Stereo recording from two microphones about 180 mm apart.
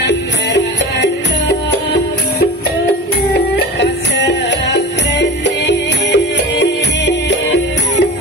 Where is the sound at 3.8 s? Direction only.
75° left (ahead or behind).